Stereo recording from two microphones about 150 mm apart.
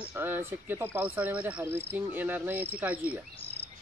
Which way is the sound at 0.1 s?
15° right (ahead or behind).